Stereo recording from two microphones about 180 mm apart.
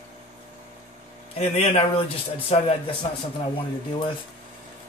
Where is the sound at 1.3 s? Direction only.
35° left (ahead or behind).